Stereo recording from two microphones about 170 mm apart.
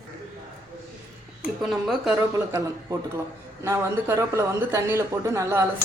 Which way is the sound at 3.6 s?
15° right (ahead or behind).